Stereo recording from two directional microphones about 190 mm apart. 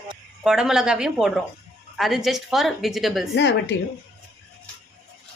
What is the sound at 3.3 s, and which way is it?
Speech, 70° left (ahead or behind).